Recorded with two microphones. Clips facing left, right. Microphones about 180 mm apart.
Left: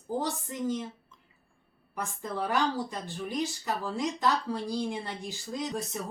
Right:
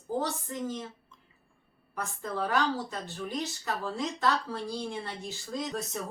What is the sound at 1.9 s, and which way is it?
Speech, 15° left (ahead or behind).